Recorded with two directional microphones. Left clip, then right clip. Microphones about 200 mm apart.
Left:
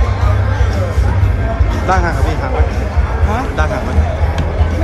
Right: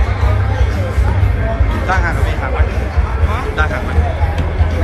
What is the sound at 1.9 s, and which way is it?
Music, 30° left (ahead or behind).